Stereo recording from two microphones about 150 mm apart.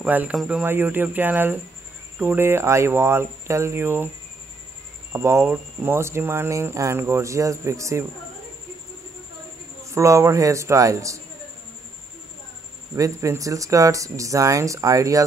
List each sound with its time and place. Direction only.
0.0 s speech: 10° right (ahead or behind)
5.1 s speech: 20° right (ahead or behind)
9.8 s speech: 20° right (ahead or behind)
12.9 s speech: 20° right (ahead or behind)